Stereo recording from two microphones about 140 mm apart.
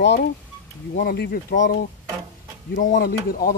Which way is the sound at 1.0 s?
90° left.